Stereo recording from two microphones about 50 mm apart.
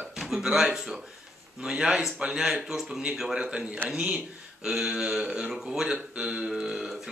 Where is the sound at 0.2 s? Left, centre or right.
Centre.